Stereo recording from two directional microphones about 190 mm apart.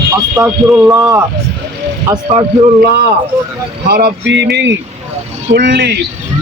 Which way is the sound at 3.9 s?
55° right (ahead or behind).